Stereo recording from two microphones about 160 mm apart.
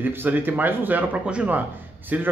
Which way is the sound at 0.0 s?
10° right (ahead or behind).